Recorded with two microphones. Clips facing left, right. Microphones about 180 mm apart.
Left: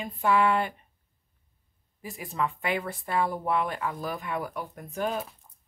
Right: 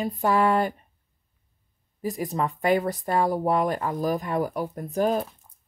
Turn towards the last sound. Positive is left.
turn(degrees=-40)  # may be behind; listen again after turning